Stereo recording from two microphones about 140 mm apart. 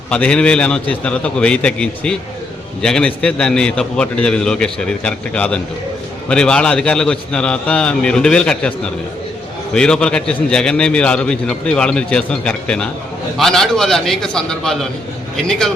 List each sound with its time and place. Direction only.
0.1 s a man's voice: 5° left (ahead or behind)